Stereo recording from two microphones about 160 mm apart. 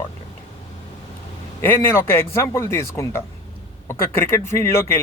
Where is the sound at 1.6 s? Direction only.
15° left (ahead or behind).